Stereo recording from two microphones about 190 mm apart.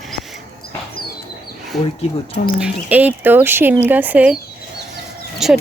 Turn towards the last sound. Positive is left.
turn(degrees=0)  # may be behind; listen again after turning